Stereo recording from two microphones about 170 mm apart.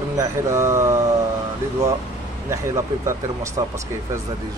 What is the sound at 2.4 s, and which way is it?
Speech, 20° right (ahead or behind).